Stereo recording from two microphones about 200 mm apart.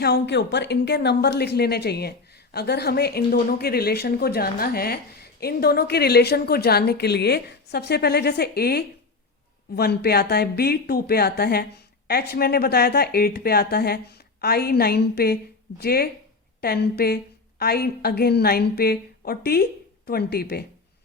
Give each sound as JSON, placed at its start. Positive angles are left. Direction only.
{"t": 0.0, "sound": "speech", "side_deg": 55}